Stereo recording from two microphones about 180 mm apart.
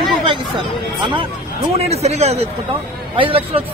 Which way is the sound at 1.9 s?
35° right (ahead or behind).